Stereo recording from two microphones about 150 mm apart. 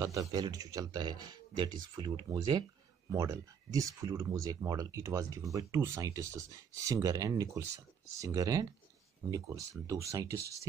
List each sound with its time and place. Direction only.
0.0 s speech: 25° right (ahead or behind)
9.8 s speech: 20° right (ahead or behind)